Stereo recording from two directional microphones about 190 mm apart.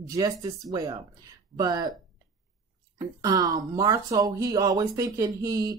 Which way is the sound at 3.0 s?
20° right (ahead or behind).